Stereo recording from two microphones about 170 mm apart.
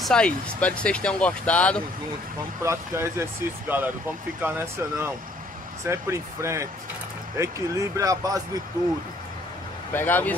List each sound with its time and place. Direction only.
0.0 s speech: 5° left (ahead or behind)
2.6 s speech: 15° right (ahead or behind)
9.9 s speech: 10° left (ahead or behind)